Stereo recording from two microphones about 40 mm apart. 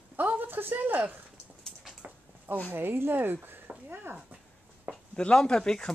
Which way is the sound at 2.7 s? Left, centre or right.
Right.